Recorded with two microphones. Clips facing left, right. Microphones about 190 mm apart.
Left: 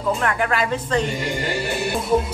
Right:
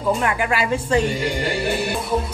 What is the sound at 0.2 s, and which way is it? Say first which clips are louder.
Speech: even; 10° right (ahead or behind).